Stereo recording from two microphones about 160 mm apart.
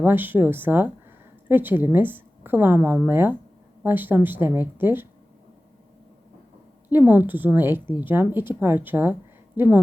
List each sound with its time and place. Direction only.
0.0 s a woman's voice: 10° right (ahead or behind)
6.9 s a woman's voice: 10° right (ahead or behind)